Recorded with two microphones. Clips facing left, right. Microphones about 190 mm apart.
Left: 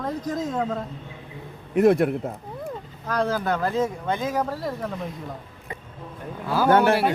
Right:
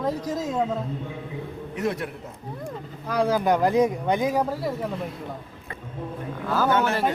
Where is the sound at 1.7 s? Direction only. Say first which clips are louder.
Left 11 dB; 55° left (ahead or behind).